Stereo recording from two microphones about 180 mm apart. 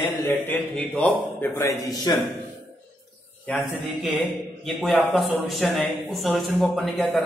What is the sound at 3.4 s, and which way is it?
A man's voice, 5° left (ahead or behind).